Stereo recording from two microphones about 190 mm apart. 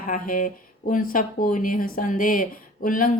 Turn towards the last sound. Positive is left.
turn(degrees=45)  # may be behind; listen again after turning